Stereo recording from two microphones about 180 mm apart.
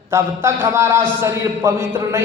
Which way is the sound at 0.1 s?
15° right (ahead or behind).